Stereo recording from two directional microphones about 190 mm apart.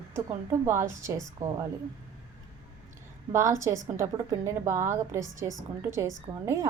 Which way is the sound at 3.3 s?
15° right (ahead or behind).